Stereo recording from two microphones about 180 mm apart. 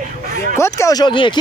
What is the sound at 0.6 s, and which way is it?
Speech, 15° left (ahead or behind).